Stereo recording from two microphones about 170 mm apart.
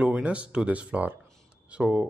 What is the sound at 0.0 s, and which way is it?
Speech, 5° right (ahead or behind).